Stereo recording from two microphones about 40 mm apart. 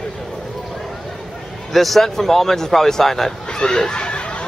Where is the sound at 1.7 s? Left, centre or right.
Centre.